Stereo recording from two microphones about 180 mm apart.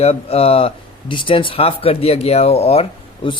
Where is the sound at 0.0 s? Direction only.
35° left (ahead or behind).